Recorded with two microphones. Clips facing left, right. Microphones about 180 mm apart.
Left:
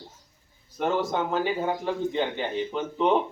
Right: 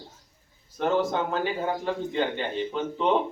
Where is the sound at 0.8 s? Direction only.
10° left (ahead or behind).